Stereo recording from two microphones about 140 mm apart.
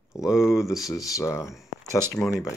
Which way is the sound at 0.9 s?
25° left (ahead or behind).